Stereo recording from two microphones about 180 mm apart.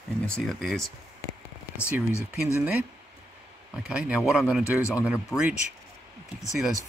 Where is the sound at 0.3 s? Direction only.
Centre (ahead or behind).